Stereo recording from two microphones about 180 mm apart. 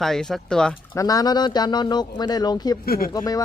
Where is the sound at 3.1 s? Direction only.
20° left (ahead or behind).